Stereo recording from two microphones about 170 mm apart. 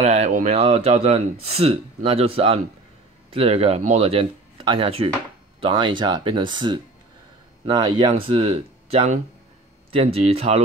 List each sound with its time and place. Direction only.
0.0 s speech: 40° right (ahead or behind)